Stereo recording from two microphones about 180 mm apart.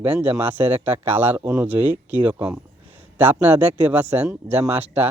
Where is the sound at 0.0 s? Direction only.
10° right (ahead or behind).